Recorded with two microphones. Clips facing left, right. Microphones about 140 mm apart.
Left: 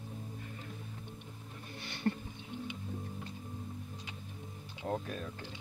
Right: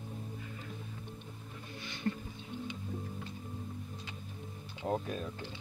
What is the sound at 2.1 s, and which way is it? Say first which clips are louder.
Music: left 2 dB; 40° left (ahead or behind).